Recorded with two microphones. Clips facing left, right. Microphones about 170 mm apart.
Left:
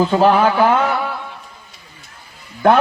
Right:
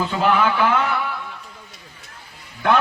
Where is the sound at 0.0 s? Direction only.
40° left (ahead or behind).